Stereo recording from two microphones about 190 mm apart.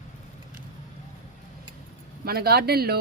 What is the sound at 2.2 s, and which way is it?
Speech, 55° right (ahead or behind).